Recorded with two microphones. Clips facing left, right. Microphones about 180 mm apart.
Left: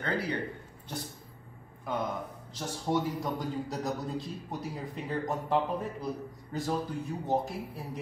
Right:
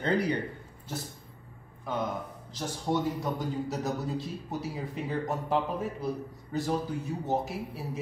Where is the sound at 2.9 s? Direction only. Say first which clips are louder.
Right 1 dB; centre (ahead or behind).